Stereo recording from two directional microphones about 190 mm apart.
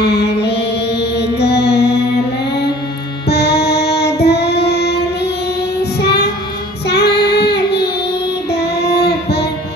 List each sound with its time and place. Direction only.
0.0 s mantra: 60° left (ahead or behind)
1.4 s music: 60° left (ahead or behind)
3.3 s child singing: 60° left (ahead or behind)
8.9 s a sound: 60° left (ahead or behind)